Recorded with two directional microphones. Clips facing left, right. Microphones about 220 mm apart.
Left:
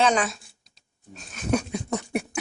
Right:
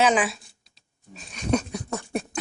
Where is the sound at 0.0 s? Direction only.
5° right (ahead or behind).